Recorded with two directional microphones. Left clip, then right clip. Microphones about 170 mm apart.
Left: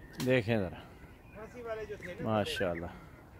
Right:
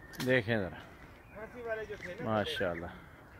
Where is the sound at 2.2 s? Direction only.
10° left (ahead or behind).